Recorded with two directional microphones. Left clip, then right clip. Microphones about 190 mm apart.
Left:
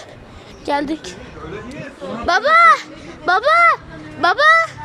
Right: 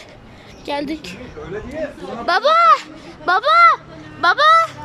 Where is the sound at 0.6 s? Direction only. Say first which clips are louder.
Left 4 dB; centre (ahead or behind).